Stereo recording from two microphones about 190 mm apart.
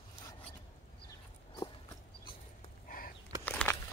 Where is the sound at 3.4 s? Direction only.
10° left (ahead or behind).